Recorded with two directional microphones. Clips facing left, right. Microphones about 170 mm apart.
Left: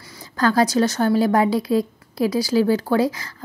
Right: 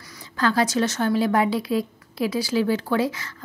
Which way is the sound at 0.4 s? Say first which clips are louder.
Left 4 dB; 40° left (ahead or behind).